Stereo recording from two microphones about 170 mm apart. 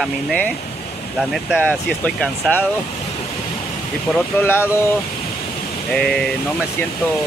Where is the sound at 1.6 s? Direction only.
5° left (ahead or behind).